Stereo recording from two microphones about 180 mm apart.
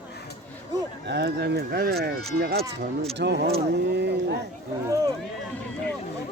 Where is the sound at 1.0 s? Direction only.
65° right (ahead or behind).